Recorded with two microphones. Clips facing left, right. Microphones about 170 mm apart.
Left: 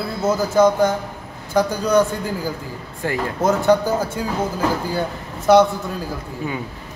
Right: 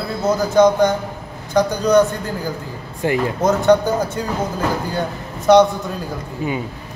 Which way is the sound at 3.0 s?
20° right (ahead or behind).